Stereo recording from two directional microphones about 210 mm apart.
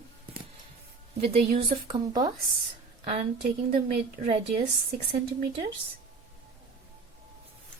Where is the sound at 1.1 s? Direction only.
30° right (ahead or behind).